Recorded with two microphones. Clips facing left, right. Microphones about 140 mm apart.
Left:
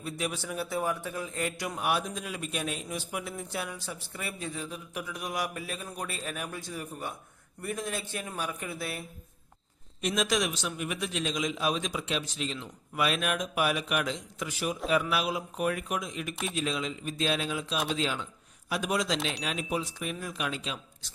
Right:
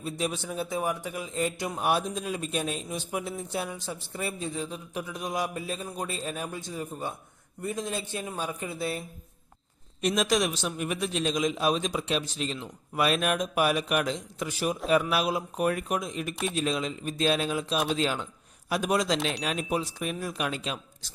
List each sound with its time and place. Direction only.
0.0 s a man's voice: 25° right (ahead or behind)
10.0 s a man's voice: 40° right (ahead or behind)
16.3 s speech: centre (ahead or behind)
16.6 s speech: 40° right (ahead or behind)